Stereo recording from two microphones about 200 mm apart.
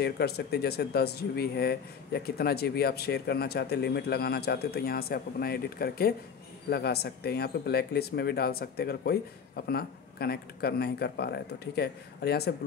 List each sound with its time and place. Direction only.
0.0 s speech: 55° left (ahead or behind)